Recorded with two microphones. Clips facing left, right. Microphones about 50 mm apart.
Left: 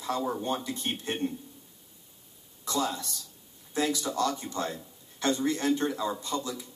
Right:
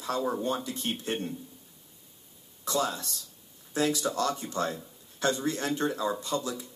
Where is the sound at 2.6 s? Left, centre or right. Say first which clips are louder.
Right 1 dB; right.